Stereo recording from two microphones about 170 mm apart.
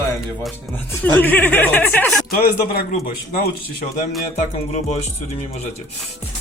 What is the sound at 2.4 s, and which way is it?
A man's voice, 60° left (ahead or behind).